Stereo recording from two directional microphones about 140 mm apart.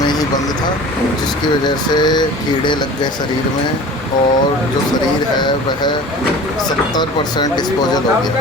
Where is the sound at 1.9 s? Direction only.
30° left (ahead or behind).